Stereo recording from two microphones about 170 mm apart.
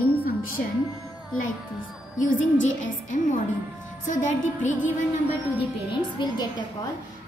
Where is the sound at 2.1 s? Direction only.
50° left (ahead or behind).